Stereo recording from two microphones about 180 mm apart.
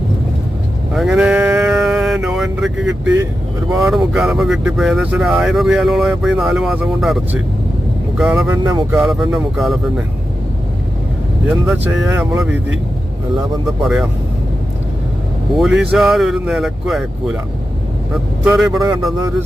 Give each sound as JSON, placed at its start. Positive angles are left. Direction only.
{"t": 0.9, "sound": "sheep", "side_deg": 0}
{"t": 3.8, "sound": "speech", "side_deg": 0}
{"t": 8.2, "sound": "speech", "side_deg": 0}
{"t": 8.4, "sound": "a sound", "side_deg": -20}
{"t": 8.9, "sound": "speech", "side_deg": -5}
{"t": 11.4, "sound": "speech", "side_deg": -5}
{"t": 13.8, "sound": "speech", "side_deg": 0}
{"t": 15.5, "sound": "speech", "side_deg": 0}
{"t": 18.4, "sound": "speech", "side_deg": -5}